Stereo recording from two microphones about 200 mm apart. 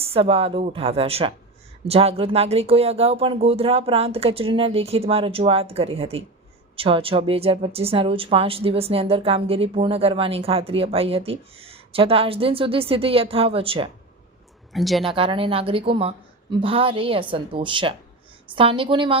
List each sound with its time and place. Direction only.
0.0 s speech: 30° right (ahead or behind)
14.7 s a woman's voice: centre (ahead or behind)
15.0 s speech: 25° right (ahead or behind)